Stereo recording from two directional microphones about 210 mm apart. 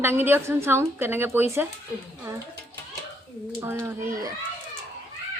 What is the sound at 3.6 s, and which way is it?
Speech, 10° right (ahead or behind).